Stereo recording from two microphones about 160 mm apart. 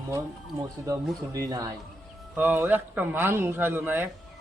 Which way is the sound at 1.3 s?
20° right (ahead or behind).